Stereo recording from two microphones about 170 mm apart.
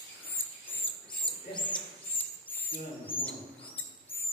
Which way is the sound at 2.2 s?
10° left (ahead or behind).